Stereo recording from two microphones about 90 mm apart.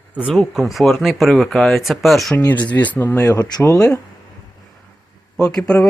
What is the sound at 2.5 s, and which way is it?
Speech, 15° left (ahead or behind).